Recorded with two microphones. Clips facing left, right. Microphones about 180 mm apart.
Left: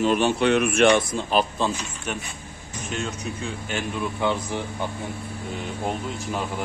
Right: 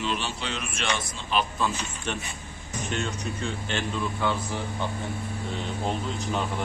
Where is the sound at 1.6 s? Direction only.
30° left (ahead or behind).